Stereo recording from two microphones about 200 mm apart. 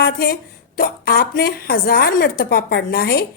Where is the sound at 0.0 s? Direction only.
50° left (ahead or behind).